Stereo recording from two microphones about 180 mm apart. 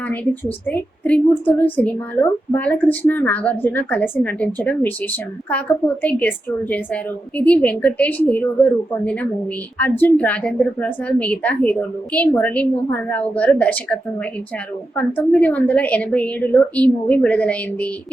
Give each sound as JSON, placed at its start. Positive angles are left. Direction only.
{"t": 0.1, "sound": "a woman's voice", "side_deg": 10}